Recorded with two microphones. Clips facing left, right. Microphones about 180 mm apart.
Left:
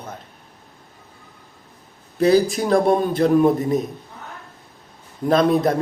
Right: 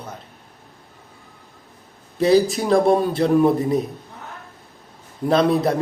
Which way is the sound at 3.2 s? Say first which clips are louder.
Left 2 dB; 5° right (ahead or behind).